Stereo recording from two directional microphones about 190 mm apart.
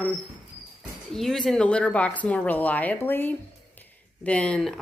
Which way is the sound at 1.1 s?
Centre (ahead or behind).